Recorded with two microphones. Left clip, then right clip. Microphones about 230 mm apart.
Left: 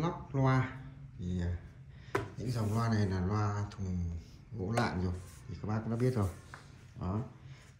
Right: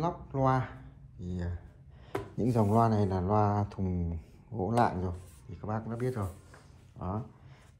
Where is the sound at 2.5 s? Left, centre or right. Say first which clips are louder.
Right 12 dB; right.